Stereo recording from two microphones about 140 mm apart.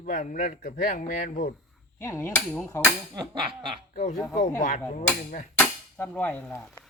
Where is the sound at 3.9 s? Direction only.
70° left (ahead or behind).